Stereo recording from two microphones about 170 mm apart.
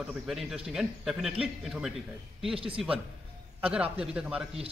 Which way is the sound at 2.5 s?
30° right (ahead or behind).